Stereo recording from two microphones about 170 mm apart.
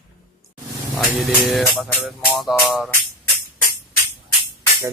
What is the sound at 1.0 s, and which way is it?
Music, centre (ahead or behind).